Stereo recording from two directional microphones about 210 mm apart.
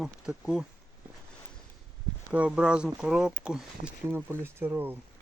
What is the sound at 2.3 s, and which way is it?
Speech, 5° right (ahead or behind).